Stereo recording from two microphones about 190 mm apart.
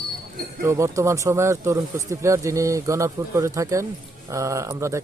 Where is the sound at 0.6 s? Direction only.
15° right (ahead or behind).